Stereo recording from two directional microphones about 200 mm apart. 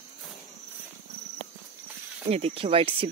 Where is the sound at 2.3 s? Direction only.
30° right (ahead or behind).